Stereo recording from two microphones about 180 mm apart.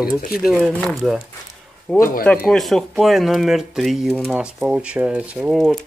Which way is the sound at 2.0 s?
50° left (ahead or behind).